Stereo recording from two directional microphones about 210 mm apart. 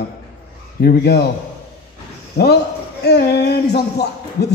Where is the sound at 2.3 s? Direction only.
50° left (ahead or behind).